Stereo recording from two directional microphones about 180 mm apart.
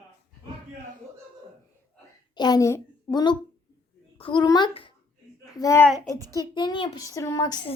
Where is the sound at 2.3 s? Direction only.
20° left (ahead or behind).